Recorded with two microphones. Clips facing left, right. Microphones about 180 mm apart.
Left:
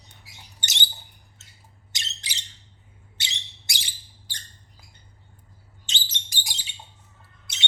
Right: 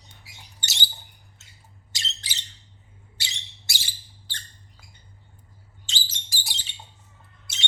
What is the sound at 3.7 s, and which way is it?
Squeak, 15° left (ahead or behind).